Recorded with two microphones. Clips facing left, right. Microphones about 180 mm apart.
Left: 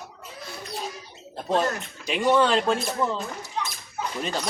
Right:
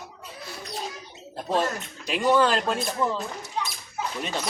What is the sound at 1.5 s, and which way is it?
Speech, centre (ahead or behind).